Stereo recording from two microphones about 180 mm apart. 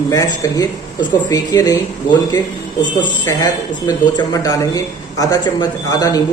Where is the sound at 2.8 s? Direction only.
25° left (ahead or behind).